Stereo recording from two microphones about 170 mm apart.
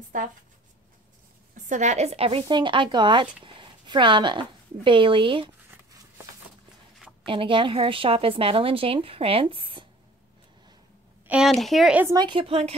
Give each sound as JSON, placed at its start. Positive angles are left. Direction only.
{"t": 1.7, "sound": "speech", "side_deg": -45}
{"t": 5.7, "sound": "a sound", "side_deg": -15}
{"t": 7.2, "sound": "a woman's voice", "side_deg": -30}
{"t": 11.2, "sound": "speech", "side_deg": -5}
{"t": 12.0, "sound": "speech", "side_deg": -20}